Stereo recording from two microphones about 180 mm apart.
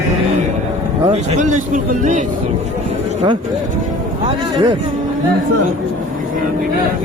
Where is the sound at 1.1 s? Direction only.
40° right (ahead or behind).